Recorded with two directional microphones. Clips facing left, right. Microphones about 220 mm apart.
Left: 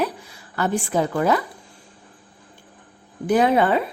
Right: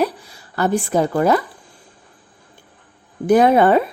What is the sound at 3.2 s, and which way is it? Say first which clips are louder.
Speech: right 5 dB; 45° right (ahead or behind).